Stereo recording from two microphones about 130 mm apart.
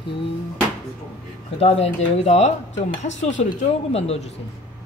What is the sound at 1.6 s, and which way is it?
Speech, 55° left (ahead or behind).